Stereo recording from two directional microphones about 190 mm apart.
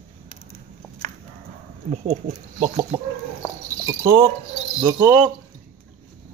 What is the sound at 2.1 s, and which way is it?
Speech, 35° right (ahead or behind).